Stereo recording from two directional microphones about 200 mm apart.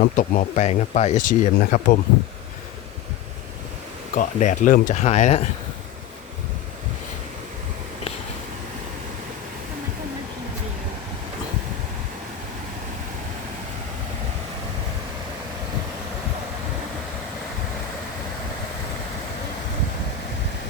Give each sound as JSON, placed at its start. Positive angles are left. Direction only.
{"t": 0.0, "sound": "speech", "side_deg": 40}
{"t": 4.1, "sound": "speech", "side_deg": 40}